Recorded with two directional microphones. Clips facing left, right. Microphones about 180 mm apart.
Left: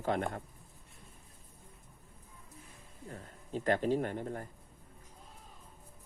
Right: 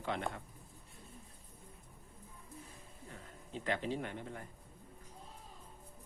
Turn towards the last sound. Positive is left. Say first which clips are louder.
# left 7 dB
turn(degrees=45)  # may be behind; listen again after turning